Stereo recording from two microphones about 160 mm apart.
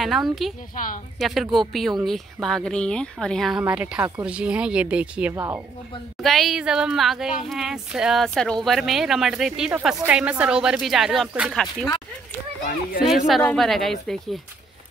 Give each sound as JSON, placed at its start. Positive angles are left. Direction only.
{"t": 0.0, "sound": "speech", "side_deg": 0}
{"t": 6.2, "sound": "speech", "side_deg": 0}
{"t": 13.3, "sound": "speech", "side_deg": 5}